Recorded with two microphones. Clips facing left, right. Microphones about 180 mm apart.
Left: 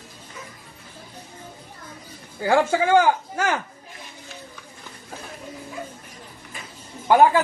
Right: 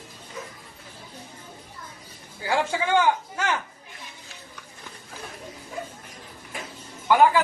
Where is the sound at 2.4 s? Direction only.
45° left (ahead or behind).